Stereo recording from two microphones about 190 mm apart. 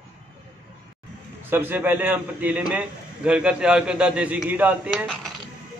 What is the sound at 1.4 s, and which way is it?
A man's voice, 10° right (ahead or behind).